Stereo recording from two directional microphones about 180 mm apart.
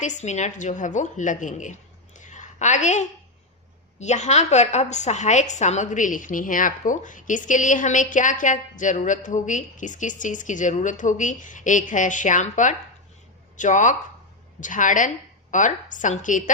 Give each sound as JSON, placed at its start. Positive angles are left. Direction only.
{"t": 0.0, "sound": "a woman's voice", "side_deg": 40}